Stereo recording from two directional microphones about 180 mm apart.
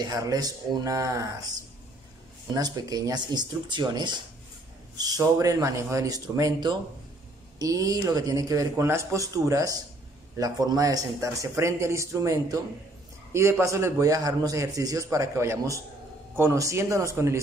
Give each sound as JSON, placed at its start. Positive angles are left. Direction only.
{"t": 0.0, "sound": "a man's voice", "side_deg": -20}